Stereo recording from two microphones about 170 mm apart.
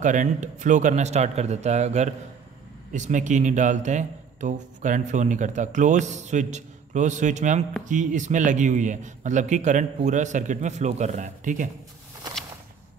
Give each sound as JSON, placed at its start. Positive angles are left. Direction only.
{"t": 0.0, "sound": "a man's voice", "side_deg": -45}